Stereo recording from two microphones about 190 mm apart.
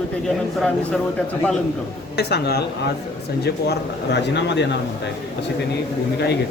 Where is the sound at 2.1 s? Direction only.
60° left (ahead or behind).